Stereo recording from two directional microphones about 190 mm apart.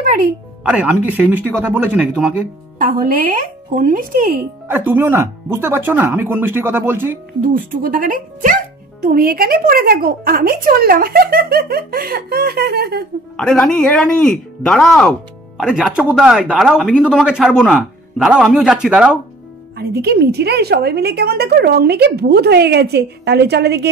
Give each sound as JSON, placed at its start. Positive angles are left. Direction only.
{"t": 0.7, "sound": "speech", "side_deg": -5}
{"t": 2.8, "sound": "a woman's voice", "side_deg": -50}
{"t": 4.6, "sound": "speech", "side_deg": -10}
{"t": 7.4, "sound": "a woman's voice", "side_deg": -45}
{"t": 13.4, "sound": "speech", "side_deg": 5}
{"t": 19.8, "sound": "a woman's voice", "side_deg": -55}